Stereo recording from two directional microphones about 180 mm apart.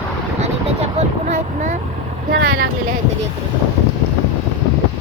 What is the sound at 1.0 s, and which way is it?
Speech, 35° right (ahead or behind).